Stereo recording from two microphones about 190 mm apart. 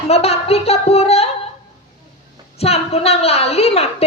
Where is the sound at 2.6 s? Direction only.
35° left (ahead or behind).